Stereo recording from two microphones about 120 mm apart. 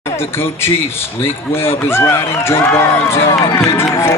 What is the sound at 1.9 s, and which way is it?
Speech, 20° left (ahead or behind).